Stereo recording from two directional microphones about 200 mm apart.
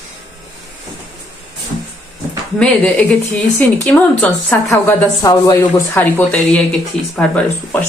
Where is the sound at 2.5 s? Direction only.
5° left (ahead or behind).